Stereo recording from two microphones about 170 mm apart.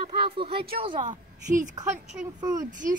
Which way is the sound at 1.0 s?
50° right (ahead or behind).